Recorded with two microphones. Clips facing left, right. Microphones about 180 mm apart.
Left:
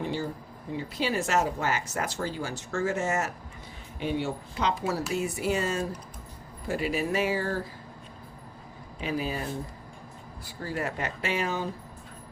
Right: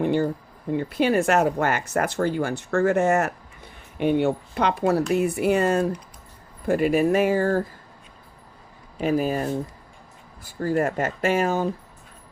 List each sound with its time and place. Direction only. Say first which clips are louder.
0.0 s a sound: right 10 dB; 55° right (ahead or behind)
0.7 s speech: right 8 dB; 55° right (ahead or behind)
9.0 s speech: right 8 dB; 45° right (ahead or behind)